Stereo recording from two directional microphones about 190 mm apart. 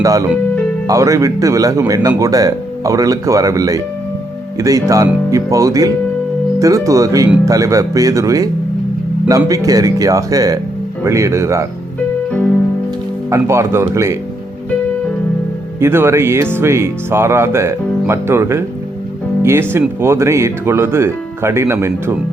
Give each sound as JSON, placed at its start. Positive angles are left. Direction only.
{"t": 0.0, "sound": "speech", "side_deg": -15}
{"t": 13.3, "sound": "speech", "side_deg": -15}
{"t": 15.8, "sound": "speech", "side_deg": -15}